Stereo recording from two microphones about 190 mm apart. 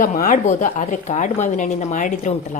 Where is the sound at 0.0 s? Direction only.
45° left (ahead or behind).